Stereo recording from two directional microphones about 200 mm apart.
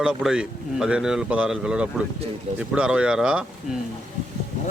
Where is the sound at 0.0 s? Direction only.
5° right (ahead or behind).